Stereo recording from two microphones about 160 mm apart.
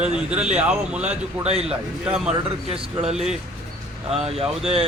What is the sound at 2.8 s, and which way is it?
Speech, 35° right (ahead or behind).